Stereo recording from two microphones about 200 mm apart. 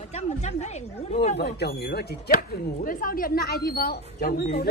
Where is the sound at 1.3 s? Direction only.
55° left (ahead or behind).